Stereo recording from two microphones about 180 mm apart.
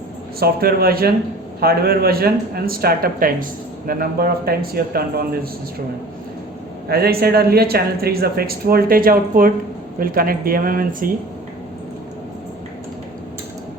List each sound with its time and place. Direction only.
0.3 s speech: 60° right (ahead or behind)
6.8 s speech: 60° right (ahead or behind)